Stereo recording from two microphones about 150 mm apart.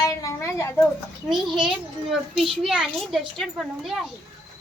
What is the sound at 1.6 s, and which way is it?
A child's voice, centre (ahead or behind).